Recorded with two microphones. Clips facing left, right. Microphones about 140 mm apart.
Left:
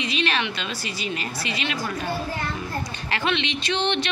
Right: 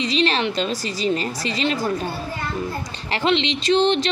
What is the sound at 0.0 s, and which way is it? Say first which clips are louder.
A woman's voice: right 5 dB; 35° right (ahead or behind).